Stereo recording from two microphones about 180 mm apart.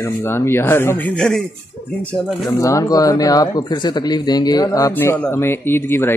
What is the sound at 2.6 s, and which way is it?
Speech, 20° left (ahead or behind).